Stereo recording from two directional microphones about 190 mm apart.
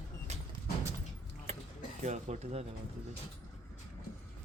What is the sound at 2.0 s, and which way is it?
Speech, 35° right (ahead or behind).